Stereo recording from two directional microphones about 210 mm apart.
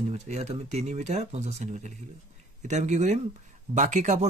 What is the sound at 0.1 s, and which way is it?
Speech, 30° right (ahead or behind).